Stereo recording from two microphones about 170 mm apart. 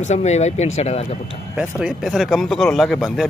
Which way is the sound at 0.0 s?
40° left (ahead or behind).